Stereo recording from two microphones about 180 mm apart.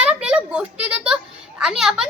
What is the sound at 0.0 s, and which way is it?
A child's voice, 5° right (ahead or behind).